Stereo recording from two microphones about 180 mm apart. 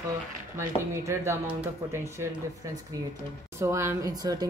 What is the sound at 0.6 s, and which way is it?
Speech, 15° right (ahead or behind).